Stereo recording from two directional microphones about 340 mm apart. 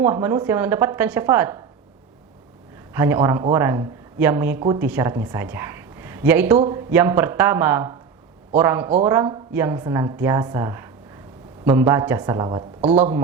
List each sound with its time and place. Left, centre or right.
0.0 s speech: centre
2.9 s speech: centre